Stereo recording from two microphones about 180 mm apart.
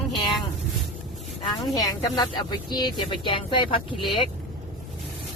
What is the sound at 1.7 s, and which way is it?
Speech, 20° left (ahead or behind).